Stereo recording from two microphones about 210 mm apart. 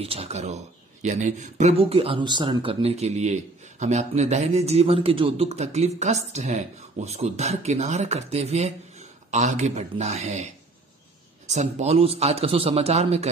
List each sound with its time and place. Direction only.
0.0 s speech: 30° right (ahead or behind)